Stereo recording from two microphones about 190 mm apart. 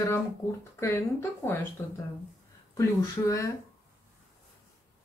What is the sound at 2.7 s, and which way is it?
Speech, 15° left (ahead or behind).